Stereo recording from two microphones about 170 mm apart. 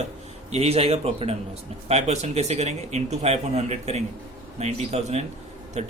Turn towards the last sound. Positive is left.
turn(degrees=-40)  # may be behind; listen again after turning